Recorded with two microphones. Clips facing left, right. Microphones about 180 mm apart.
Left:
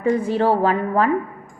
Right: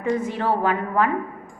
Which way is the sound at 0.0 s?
30° left (ahead or behind).